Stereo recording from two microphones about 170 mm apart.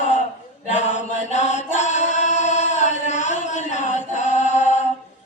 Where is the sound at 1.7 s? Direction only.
45° left (ahead or behind).